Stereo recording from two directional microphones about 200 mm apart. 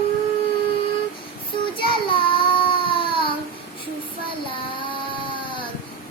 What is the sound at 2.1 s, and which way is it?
Child singing, 25° left (ahead or behind).